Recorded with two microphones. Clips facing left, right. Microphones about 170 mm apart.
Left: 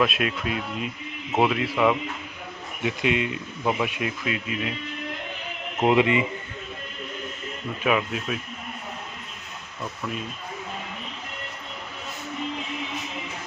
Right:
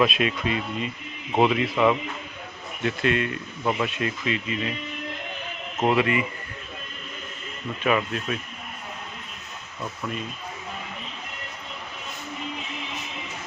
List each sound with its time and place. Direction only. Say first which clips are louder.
0.0 s speech: right 2 dB; centre (ahead or behind)
2.8 s speech: even; 15° left (ahead or behind)
5.8 s speech: left 2 dB; 15° left (ahead or behind)
7.9 s speech: even; 5° left (ahead or behind)
9.8 s speech: even; centre (ahead or behind)